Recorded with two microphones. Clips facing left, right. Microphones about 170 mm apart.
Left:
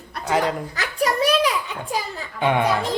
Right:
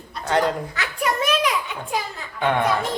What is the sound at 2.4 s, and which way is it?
Speech, 15° left (ahead or behind).